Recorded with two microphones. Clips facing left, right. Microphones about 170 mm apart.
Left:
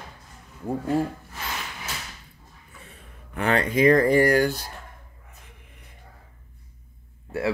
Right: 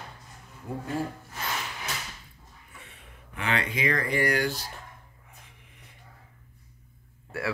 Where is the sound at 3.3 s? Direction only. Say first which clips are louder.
Left 8 dB; 45° left (ahead or behind).